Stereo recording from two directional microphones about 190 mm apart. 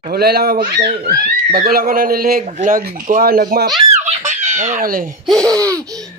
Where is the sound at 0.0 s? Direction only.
55° right (ahead or behind).